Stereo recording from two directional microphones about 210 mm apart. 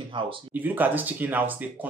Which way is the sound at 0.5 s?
10° right (ahead or behind).